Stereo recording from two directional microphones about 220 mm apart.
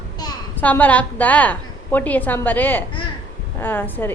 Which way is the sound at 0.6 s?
5° left (ahead or behind).